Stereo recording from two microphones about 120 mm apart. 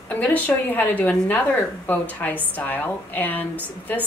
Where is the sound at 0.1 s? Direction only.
10° left (ahead or behind).